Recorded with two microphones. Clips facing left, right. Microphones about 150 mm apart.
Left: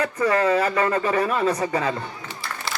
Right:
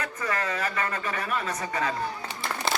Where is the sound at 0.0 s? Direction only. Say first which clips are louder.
Left 10 dB; 30° left (ahead or behind).